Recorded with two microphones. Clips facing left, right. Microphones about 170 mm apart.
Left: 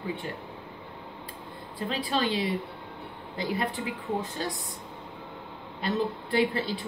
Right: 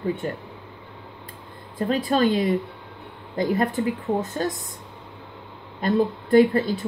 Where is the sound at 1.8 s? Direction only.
45° right (ahead or behind).